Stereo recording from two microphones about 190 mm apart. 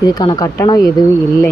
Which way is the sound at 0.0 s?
20° left (ahead or behind).